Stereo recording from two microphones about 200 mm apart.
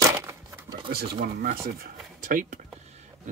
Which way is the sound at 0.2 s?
15° right (ahead or behind).